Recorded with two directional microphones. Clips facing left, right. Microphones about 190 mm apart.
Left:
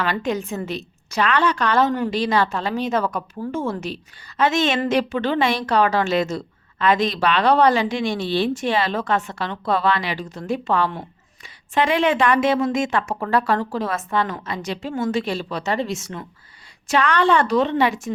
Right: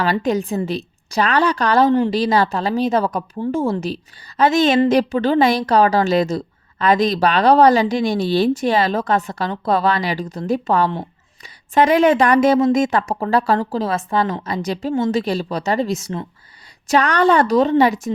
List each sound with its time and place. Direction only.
0.0 s a woman's voice: 35° right (ahead or behind)